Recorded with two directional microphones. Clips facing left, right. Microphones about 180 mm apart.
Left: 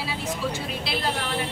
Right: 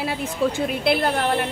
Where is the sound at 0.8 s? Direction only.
55° right (ahead or behind).